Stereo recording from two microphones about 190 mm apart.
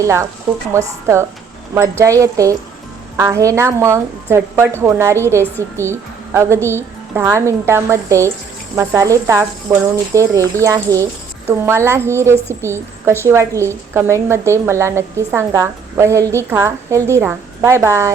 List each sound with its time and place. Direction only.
0.0 s a woman's voice: 15° right (ahead or behind)